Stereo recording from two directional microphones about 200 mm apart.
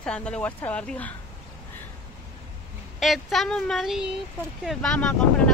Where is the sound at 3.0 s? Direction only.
Centre (ahead or behind).